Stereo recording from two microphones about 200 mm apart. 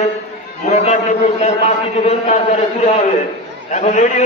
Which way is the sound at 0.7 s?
35° left (ahead or behind).